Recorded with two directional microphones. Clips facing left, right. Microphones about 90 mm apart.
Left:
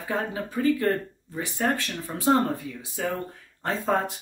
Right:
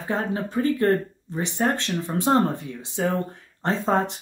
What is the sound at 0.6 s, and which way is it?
Speech, 40° right (ahead or behind).